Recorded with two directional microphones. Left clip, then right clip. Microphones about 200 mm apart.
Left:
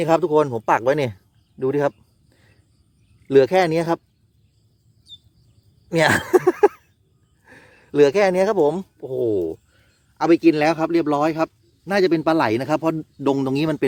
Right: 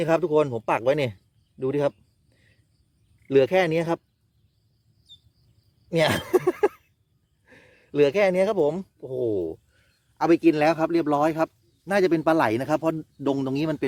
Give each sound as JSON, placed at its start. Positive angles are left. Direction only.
{"t": 0.0, "sound": "a man's voice", "side_deg": 5}
{"t": 2.3, "sound": "cricket", "side_deg": 0}
{"t": 3.2, "sound": "a man's voice", "side_deg": 5}
{"t": 5.9, "sound": "a sound", "side_deg": 10}
{"t": 7.4, "sound": "a man's voice", "side_deg": 10}